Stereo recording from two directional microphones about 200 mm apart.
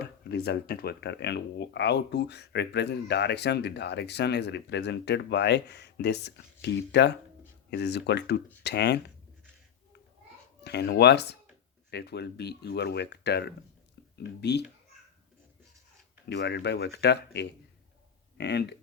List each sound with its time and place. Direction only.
0.0 s speech: 50° left (ahead or behind)
10.6 s speech: 55° left (ahead or behind)
16.3 s speech: 55° left (ahead or behind)